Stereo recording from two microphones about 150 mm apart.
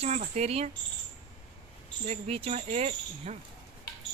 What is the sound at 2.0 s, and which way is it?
Speech, 45° right (ahead or behind).